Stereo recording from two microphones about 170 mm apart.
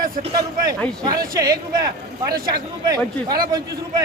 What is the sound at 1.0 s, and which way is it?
A man's voice, 20° right (ahead or behind).